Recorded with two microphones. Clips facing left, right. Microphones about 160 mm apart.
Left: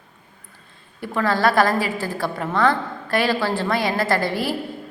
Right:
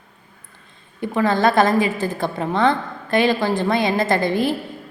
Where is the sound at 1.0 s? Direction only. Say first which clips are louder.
Right 2 dB; 20° right (ahead or behind).